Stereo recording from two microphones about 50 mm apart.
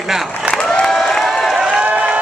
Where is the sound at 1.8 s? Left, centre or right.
Right.